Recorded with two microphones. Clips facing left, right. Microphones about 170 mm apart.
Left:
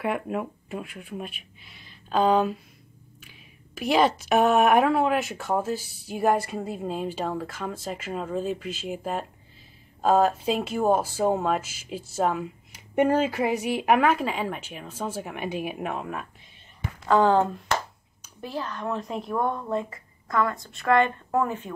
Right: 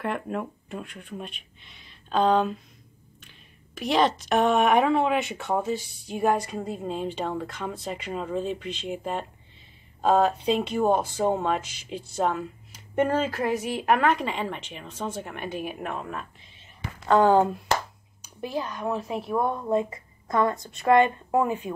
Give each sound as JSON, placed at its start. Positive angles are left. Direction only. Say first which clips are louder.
{"t": 0.0, "sound": "a woman's voice", "louder": "left 2 dB", "side_deg": 5}
{"t": 17.1, "sound": "a woman's voice", "louder": "right 1 dB", "side_deg": -10}